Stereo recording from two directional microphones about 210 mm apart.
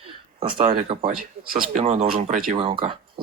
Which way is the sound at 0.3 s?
25° right (ahead or behind).